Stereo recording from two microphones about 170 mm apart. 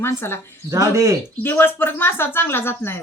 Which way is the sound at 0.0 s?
15° left (ahead or behind).